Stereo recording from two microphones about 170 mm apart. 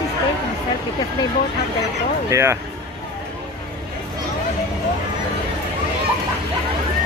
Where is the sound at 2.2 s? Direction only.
15° right (ahead or behind).